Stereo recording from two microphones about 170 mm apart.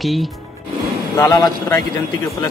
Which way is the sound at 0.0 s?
Centre (ahead or behind).